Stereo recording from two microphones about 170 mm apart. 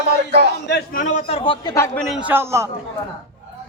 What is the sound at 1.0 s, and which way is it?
Speech, 40° left (ahead or behind).